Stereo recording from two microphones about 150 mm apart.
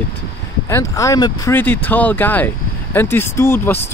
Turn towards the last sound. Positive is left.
turn(degrees=15)  # may be behind; listen again after turning